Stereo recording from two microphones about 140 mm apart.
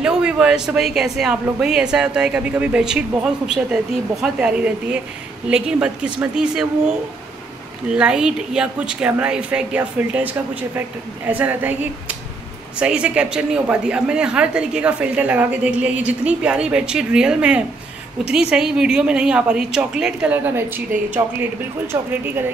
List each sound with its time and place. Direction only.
0.0 s a woman's voice: 5° right (ahead or behind)
21.9 s speech: 20° right (ahead or behind)